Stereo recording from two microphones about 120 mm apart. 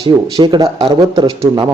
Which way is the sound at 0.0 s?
45° right (ahead or behind).